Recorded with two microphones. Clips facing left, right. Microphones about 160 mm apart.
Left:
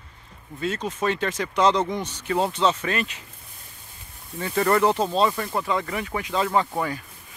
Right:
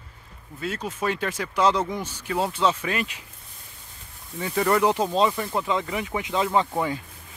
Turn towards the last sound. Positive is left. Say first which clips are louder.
# even
turn(degrees=-20)  # may be behind; listen again after turning